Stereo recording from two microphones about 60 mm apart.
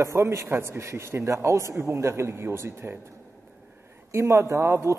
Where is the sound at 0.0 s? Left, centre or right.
Right.